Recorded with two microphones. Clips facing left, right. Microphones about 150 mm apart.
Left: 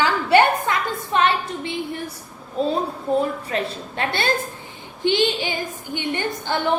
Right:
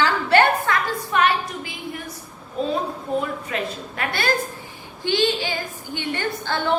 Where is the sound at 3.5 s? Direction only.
30° left (ahead or behind).